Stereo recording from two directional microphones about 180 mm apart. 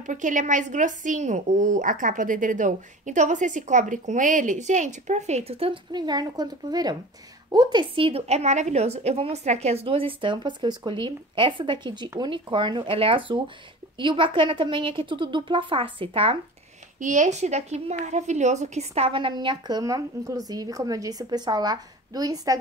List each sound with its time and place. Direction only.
0.0 s a woman's voice: 45° right (ahead or behind)
17.0 s a woman's voice: 45° right (ahead or behind); by 22.6 s 20° right (ahead or behind)